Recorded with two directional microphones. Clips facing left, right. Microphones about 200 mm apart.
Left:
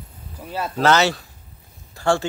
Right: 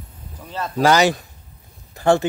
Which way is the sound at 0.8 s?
15° right (ahead or behind).